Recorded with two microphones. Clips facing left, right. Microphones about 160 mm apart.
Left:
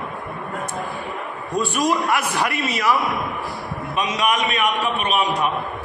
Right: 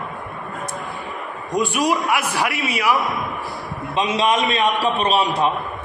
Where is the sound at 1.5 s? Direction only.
15° right (ahead or behind).